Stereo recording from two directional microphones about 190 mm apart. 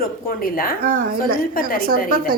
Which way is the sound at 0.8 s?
45° right (ahead or behind).